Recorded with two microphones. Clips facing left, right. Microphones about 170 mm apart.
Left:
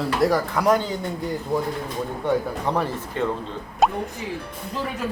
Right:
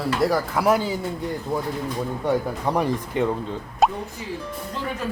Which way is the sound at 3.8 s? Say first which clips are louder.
Even; centre (ahead or behind).